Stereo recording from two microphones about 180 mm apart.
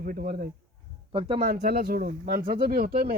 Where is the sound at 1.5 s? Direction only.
60° right (ahead or behind).